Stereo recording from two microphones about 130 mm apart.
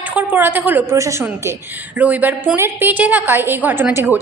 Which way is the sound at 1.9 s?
10° right (ahead or behind).